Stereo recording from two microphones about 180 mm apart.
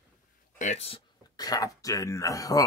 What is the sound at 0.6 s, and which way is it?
Speech, 40° left (ahead or behind).